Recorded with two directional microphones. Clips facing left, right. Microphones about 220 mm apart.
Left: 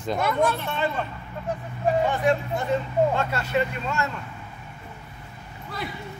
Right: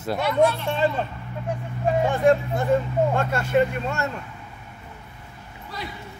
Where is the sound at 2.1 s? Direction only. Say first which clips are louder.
Right 4 dB; 50° right (ahead or behind).